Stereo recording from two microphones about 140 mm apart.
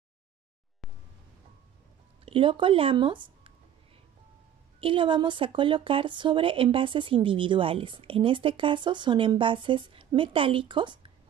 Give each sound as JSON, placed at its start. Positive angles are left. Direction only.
{"t": 2.2, "sound": "speech", "side_deg": -40}
{"t": 4.7, "sound": "speech", "side_deg": -40}